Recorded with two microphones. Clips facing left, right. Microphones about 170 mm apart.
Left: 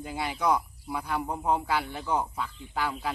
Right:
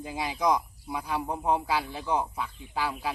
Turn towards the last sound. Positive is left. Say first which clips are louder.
# even
turn(degrees=-10)  # may be behind; listen again after turning